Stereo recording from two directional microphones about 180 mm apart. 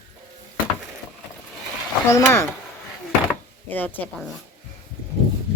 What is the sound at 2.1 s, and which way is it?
Speech, 15° left (ahead or behind).